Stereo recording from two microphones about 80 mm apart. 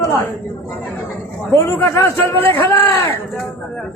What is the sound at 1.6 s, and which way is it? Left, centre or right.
A man's voice, left.